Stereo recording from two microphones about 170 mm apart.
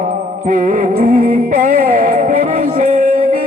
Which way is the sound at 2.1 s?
55° right (ahead or behind).